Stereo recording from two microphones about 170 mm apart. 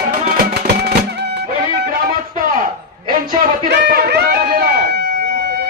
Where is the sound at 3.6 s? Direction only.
70° right (ahead or behind).